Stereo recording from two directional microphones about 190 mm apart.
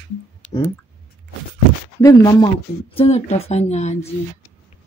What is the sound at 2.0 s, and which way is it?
Speech, 20° left (ahead or behind).